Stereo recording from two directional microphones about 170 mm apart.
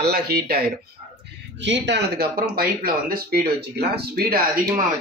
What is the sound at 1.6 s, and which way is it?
Speech, 90° right.